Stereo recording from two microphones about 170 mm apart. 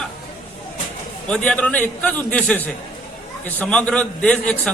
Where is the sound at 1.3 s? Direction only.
5° left (ahead or behind).